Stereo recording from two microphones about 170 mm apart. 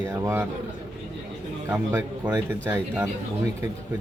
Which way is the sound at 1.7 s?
20° right (ahead or behind).